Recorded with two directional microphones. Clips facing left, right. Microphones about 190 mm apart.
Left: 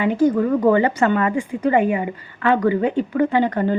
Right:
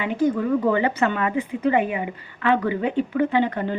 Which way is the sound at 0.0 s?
40° left (ahead or behind).